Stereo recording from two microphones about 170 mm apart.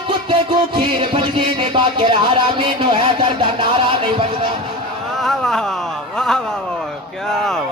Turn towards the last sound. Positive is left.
turn(degrees=5)  # may be behind; listen again after turning